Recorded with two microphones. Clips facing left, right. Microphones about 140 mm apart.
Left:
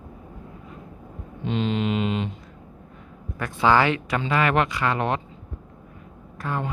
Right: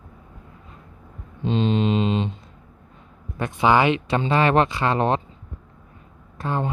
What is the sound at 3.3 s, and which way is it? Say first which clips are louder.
Speech: right 1 dB; 20° right (ahead or behind).